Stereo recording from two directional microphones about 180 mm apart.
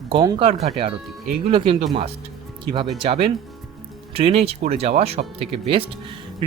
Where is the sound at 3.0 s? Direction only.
30° right (ahead or behind).